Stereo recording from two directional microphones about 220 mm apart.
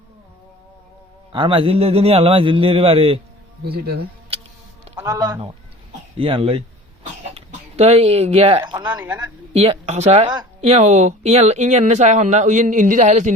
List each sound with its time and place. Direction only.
1.3 s a man's voice: 25° right (ahead or behind)
3.6 s speech: 45° right (ahead or behind)
4.9 s a man's voice: 15° right (ahead or behind)
9.6 s speech: 30° right (ahead or behind)